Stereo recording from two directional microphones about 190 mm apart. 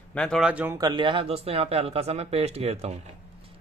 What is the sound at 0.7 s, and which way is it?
A man's voice, 25° right (ahead or behind).